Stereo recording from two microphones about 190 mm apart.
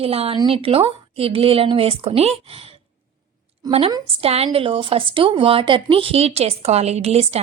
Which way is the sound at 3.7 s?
30° right (ahead or behind).